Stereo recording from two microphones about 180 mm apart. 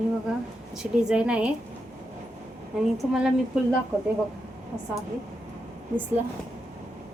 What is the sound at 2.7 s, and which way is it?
Speech, centre (ahead or behind).